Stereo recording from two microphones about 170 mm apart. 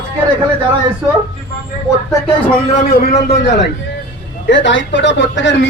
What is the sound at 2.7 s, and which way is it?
Speech, 60° left (ahead or behind).